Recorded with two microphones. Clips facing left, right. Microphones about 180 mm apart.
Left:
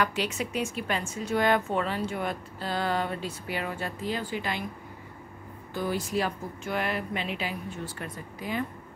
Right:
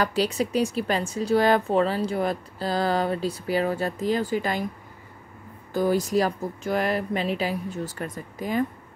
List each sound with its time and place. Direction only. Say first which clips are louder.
0.0 s speech: right 5 dB; 35° right (ahead or behind)
5.7 s speech: right 8 dB; 40° right (ahead or behind)